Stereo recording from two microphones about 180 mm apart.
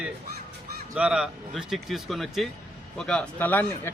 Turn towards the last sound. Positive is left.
turn(degrees=10)  # may be behind; listen again after turning